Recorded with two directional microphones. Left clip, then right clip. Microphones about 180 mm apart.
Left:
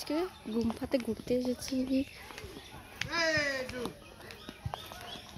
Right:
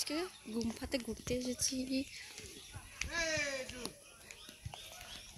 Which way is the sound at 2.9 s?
5° left (ahead or behind).